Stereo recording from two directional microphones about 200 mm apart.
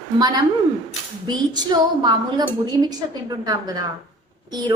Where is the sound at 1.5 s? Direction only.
20° right (ahead or behind).